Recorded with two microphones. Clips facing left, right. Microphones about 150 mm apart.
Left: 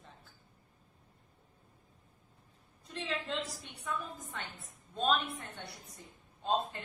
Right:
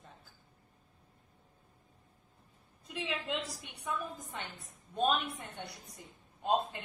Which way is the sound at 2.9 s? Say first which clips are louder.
Even; 10° right (ahead or behind).